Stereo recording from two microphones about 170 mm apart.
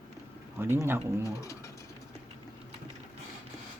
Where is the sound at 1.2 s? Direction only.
20° left (ahead or behind).